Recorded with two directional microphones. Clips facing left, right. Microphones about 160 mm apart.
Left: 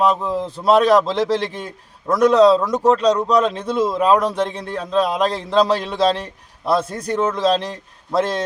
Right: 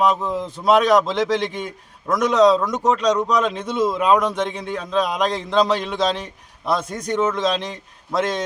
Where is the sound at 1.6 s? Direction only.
30° left (ahead or behind).